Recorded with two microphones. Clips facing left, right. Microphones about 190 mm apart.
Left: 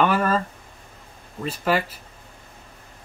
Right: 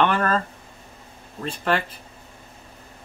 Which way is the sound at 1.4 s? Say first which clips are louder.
Left 1 dB; 5° left (ahead or behind).